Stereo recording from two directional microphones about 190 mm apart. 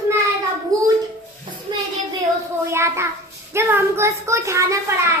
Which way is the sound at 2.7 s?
15° right (ahead or behind).